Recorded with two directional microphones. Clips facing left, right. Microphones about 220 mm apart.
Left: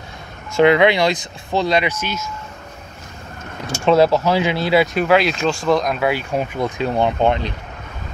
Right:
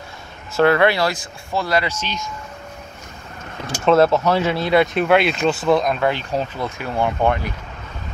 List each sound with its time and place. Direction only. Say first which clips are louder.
0.6 s speech: left 2 dB; 15° left (ahead or behind)
3.8 s speech: even; centre (ahead or behind); by 7.5 s 25° left (ahead or behind)